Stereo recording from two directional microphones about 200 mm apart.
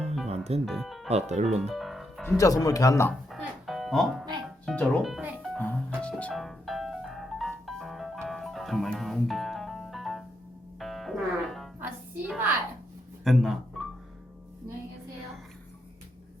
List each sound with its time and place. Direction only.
0.3 s music: 30° right (ahead or behind)
0.6 s speech: centre (ahead or behind)
1.0 s speech: 35° right (ahead or behind)
1.7 s music: centre (ahead or behind)
2.4 s speech: 15° left (ahead or behind)
3.2 s music: centre (ahead or behind)
11.8 s a sound: 10° right (ahead or behind)
13.2 s music: centre (ahead or behind)